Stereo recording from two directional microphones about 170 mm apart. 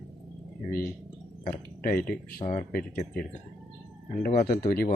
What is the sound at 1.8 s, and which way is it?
Speech, 60° left (ahead or behind).